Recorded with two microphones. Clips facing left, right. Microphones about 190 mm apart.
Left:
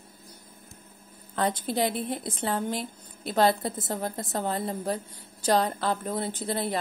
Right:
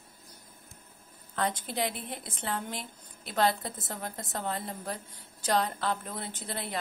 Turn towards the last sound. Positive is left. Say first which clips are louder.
# left 8 dB
turn(degrees=35)  # may be behind; listen again after turning